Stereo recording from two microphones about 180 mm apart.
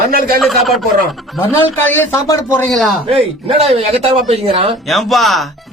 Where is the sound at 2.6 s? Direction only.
Centre (ahead or behind).